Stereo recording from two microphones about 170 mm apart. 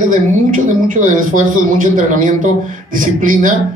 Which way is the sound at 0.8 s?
50° right (ahead or behind).